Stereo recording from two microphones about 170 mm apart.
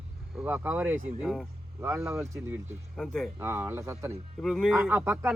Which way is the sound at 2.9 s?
Centre (ahead or behind).